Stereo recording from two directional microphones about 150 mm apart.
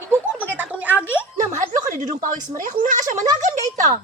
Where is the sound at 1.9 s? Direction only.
60° right (ahead or behind).